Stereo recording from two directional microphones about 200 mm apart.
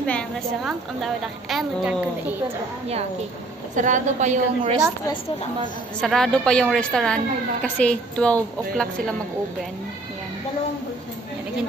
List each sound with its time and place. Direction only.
0.7 s a woman's voice: centre (ahead or behind)
3.7 s a woman's voice: 40° right (ahead or behind)
5.9 s a woman's voice: centre (ahead or behind)